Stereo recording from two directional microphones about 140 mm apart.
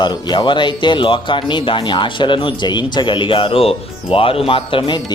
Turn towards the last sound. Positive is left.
turn(degrees=40)  # may be behind; listen again after turning